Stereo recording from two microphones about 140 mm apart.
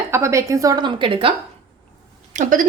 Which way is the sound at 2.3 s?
70° right (ahead or behind).